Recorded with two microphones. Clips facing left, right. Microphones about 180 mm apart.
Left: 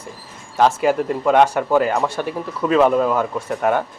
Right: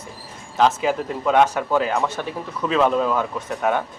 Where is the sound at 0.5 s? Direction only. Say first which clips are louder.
Left 3 dB; 10° left (ahead or behind).